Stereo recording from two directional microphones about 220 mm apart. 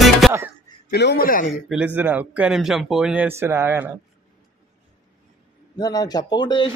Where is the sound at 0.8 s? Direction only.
45° left (ahead or behind).